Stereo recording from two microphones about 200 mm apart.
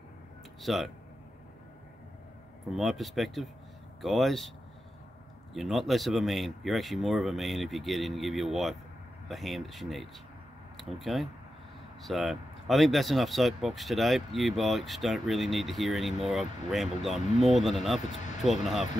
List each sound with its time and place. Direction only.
0.6 s speech: centre (ahead or behind)
2.7 s speech: centre (ahead or behind)
5.5 s speech: centre (ahead or behind)
18.0 s speech: 40° left (ahead or behind)